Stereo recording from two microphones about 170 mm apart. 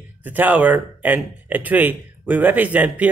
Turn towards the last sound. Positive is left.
turn(degrees=-10)  # may be behind; listen again after turning